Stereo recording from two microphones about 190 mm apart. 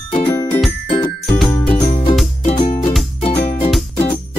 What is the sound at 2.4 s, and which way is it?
Music, 35° left (ahead or behind).